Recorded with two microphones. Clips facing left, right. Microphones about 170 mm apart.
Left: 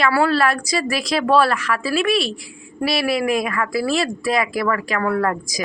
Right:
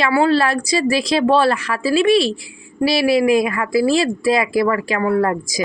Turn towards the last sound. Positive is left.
turn(degrees=-25)  # may be behind; listen again after turning